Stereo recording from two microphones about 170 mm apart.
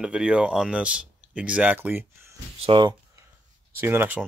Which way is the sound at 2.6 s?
30° right (ahead or behind).